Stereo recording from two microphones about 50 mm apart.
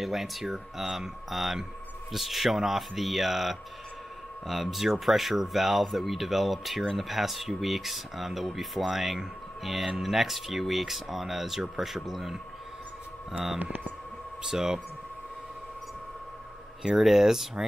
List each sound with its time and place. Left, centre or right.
0.0 s speech: centre
13.6 s speech: right
14.4 s speech: centre
16.8 s speech: centre